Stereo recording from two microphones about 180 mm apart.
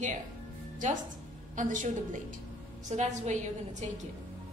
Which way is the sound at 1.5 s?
45° right (ahead or behind).